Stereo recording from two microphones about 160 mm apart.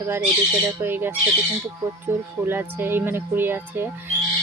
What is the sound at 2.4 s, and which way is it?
Speech, 15° right (ahead or behind).